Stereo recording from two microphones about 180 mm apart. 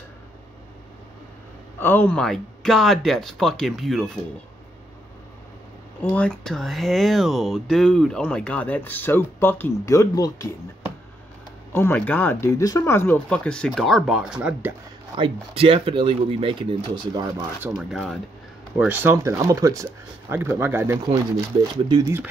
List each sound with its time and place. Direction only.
1.8 s speech: 10° left (ahead or behind)
6.1 s speech: 5° left (ahead or behind)
11.7 s speech: 10° left (ahead or behind); by 14.8 s 10° right (ahead or behind)
15.1 s speech: 30° right (ahead or behind)
17.7 s speech: centre (ahead or behind)